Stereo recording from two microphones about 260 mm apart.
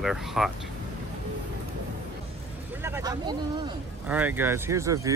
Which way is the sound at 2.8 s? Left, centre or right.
Centre.